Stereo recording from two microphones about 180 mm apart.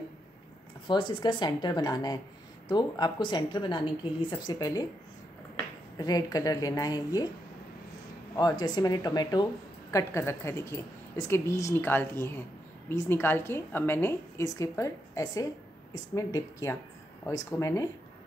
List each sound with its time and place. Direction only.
0.8 s a woman's voice: 25° left (ahead or behind)
5.9 s a woman's voice: 20° left (ahead or behind)
8.4 s a woman's voice: 20° left (ahead or behind)